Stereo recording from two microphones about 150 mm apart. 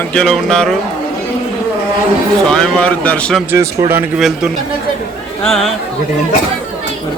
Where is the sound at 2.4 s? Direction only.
5° left (ahead or behind).